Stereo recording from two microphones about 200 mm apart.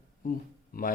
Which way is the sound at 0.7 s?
45° left (ahead or behind).